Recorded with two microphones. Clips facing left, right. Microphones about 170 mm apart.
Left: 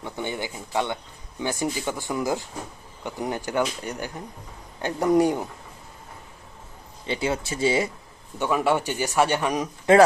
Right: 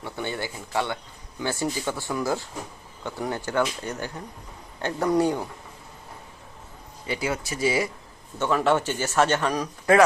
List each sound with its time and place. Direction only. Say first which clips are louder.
0.0 s speech: left 1 dB; 15° left (ahead or behind)
7.1 s speech: left 2 dB; 25° left (ahead or behind)
8.4 s speech: even; 10° left (ahead or behind)